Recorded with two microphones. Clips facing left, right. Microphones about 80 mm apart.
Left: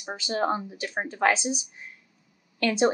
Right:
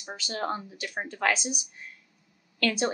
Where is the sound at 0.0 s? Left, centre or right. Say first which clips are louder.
Left 5 dB; centre.